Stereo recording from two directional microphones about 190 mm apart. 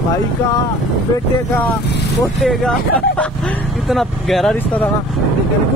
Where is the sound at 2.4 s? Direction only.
5° left (ahead or behind).